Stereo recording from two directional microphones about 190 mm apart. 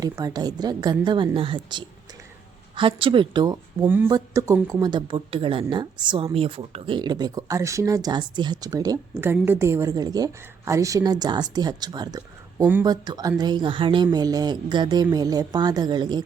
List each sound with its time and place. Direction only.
0.0 s speech: 20° right (ahead or behind)